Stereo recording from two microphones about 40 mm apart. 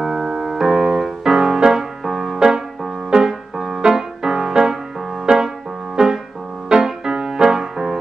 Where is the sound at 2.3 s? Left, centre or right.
Centre.